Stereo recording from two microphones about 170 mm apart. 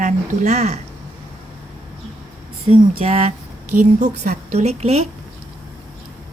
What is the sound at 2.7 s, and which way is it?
A woman's voice, 40° right (ahead or behind).